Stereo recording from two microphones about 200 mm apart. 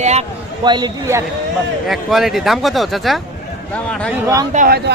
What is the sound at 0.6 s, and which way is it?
Speech, 20° right (ahead or behind).